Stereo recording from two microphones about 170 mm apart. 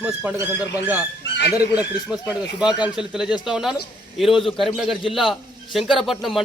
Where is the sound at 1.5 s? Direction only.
5° right (ahead or behind).